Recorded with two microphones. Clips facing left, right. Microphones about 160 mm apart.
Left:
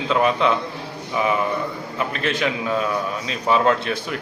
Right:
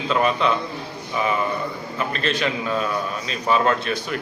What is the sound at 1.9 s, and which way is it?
A man's voice, 15° left (ahead or behind).